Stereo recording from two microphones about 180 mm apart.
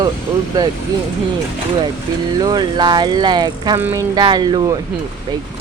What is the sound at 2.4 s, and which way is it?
Speech, 25° right (ahead or behind).